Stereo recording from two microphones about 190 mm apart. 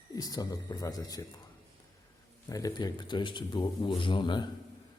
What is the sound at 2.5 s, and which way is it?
A man's voice, 20° left (ahead or behind).